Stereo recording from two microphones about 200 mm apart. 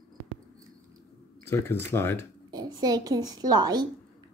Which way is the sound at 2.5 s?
20° right (ahead or behind).